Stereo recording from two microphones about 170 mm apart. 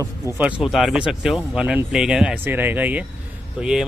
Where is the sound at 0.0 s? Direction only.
10° right (ahead or behind).